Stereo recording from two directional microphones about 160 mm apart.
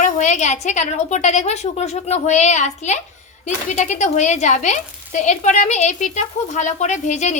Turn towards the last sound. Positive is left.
turn(degrees=50)  # may be behind; listen again after turning